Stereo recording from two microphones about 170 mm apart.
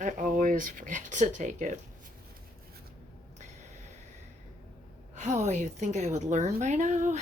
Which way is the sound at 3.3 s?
45° right (ahead or behind).